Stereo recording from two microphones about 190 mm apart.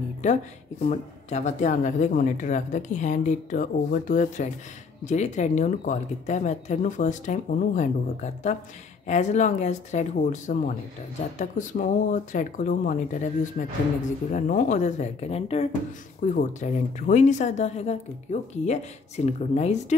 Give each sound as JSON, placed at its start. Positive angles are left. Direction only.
{"t": 0.8, "sound": "speech", "side_deg": 40}